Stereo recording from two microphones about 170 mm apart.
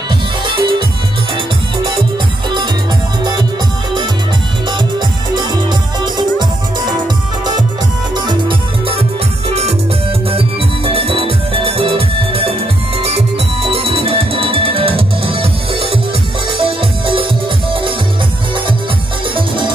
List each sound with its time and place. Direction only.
0.5 s music: 30° right (ahead or behind)
5.3 s music: 25° right (ahead or behind)
8.3 s music: 30° right (ahead or behind)
10.9 s music: 35° right (ahead or behind)
16.5 s music: 30° right (ahead or behind)